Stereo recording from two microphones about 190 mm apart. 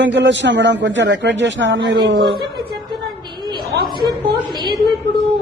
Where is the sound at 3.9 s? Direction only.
25° right (ahead or behind).